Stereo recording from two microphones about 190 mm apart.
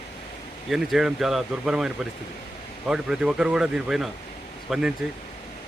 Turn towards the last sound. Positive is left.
turn(degrees=-5)  # may be behind; listen again after turning